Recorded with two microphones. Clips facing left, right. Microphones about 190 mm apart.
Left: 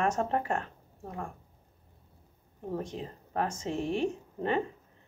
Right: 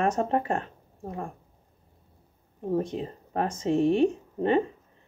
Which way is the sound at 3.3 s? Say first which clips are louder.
Right 3 dB; 35° right (ahead or behind).